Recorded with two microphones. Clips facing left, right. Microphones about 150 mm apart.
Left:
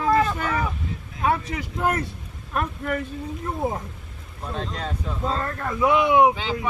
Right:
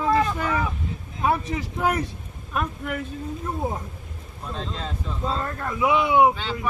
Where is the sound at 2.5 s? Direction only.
5° right (ahead or behind).